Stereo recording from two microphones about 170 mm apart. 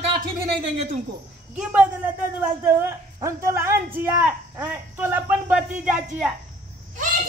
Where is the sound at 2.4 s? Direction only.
15° right (ahead or behind).